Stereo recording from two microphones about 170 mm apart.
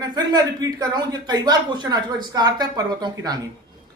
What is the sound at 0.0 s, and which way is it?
Speech, 25° right (ahead or behind).